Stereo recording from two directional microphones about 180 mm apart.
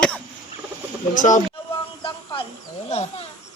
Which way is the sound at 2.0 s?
25° left (ahead or behind).